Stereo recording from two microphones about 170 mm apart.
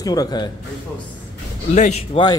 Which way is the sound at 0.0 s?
20° left (ahead or behind).